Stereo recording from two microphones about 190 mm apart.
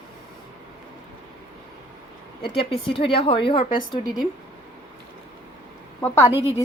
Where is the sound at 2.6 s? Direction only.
30° left (ahead or behind).